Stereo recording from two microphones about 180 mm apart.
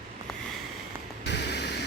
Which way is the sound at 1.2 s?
70° left (ahead or behind).